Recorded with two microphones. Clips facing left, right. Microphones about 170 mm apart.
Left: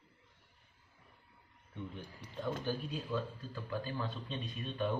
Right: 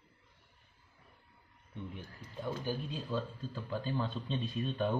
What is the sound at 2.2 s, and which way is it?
Speech, 70° left (ahead or behind).